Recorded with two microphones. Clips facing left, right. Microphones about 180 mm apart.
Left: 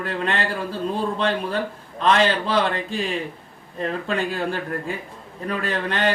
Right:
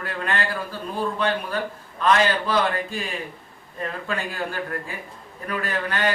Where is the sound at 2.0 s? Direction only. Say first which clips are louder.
Left 1 dB; 30° left (ahead or behind).